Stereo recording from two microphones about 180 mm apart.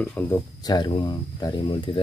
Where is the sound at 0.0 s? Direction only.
10° left (ahead or behind).